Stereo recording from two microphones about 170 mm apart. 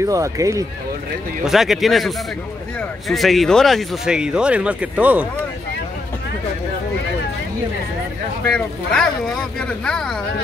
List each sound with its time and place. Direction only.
0.0 s speech: 20° right (ahead or behind)
1.4 s speech: centre (ahead or behind)
8.5 s speech: 5° left (ahead or behind)